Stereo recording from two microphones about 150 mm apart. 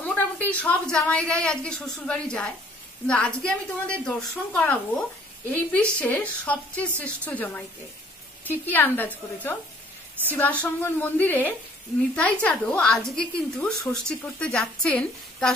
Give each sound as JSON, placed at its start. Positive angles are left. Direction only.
{"t": 0.1, "sound": "a woman's voice", "side_deg": 10}
{"t": 8.6, "sound": "a woman's voice", "side_deg": 10}
{"t": 10.6, "sound": "a woman's voice", "side_deg": 10}